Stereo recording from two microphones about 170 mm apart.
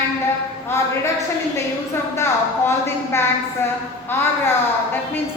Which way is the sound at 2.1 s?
15° left (ahead or behind).